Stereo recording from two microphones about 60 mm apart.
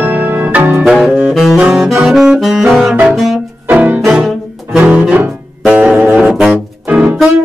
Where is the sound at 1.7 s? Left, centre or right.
Centre.